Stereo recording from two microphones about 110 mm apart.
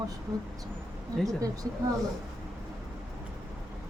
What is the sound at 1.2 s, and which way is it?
Speech, 30° right (ahead or behind).